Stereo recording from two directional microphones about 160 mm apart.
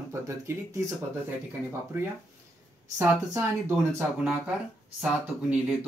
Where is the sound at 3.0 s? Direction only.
15° right (ahead or behind).